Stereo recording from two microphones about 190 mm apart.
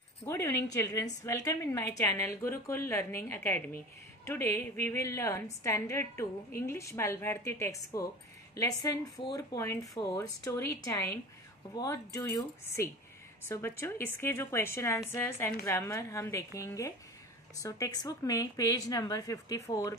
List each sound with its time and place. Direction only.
0.2 s a woman's voice: 15° left (ahead or behind)